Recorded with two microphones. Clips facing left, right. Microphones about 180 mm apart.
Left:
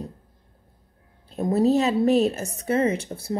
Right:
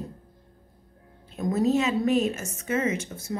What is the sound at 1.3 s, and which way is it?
A woman's voice, 35° left (ahead or behind).